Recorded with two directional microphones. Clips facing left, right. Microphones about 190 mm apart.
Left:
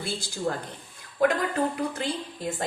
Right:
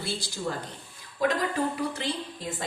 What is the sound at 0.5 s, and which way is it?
Speech, 45° left (ahead or behind).